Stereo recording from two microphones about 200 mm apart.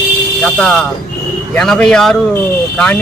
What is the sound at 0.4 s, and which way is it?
Speech, 5° left (ahead or behind).